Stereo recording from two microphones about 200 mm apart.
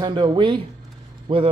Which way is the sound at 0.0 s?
25° right (ahead or behind).